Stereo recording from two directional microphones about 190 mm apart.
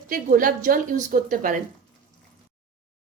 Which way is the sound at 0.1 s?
45° right (ahead or behind).